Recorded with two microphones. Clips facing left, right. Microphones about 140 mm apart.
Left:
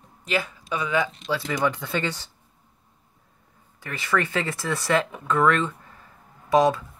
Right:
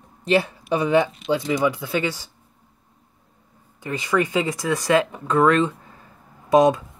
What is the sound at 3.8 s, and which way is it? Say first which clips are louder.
Speech: right 4 dB; 20° right (ahead or behind).